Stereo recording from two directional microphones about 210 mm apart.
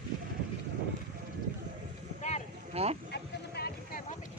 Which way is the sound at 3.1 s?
50° left (ahead or behind).